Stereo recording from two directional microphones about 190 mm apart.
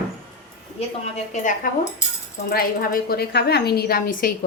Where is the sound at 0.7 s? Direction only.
35° left (ahead or behind).